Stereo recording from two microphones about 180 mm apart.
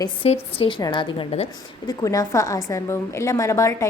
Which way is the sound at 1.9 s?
20° left (ahead or behind).